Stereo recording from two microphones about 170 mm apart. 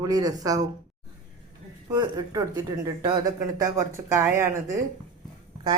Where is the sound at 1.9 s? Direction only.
20° right (ahead or behind).